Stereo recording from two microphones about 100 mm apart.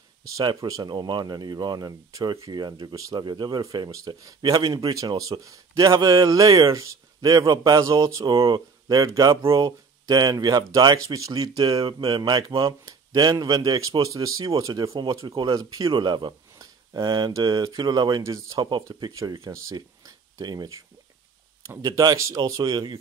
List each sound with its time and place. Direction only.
0.4 s speech: 40° right (ahead or behind)
0.9 s speech: 50° right (ahead or behind); by 2.5 s 35° right (ahead or behind)
2.5 s speech: 45° right (ahead or behind)
3.3 s speech: 45° right (ahead or behind)
4.7 s speech: 40° right (ahead or behind)
11.6 s speech: 65° right (ahead or behind)
12.1 s speech: 40° right (ahead or behind)
13.6 s speech: 35° right (ahead or behind)
19.1 s speech: 35° right (ahead or behind)
21.8 s speech: 40° right (ahead or behind)